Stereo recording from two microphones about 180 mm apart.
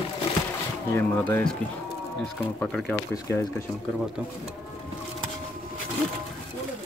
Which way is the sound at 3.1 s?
15° left (ahead or behind).